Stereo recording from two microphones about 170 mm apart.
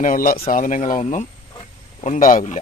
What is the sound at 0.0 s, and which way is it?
Speech, 50° left (ahead or behind).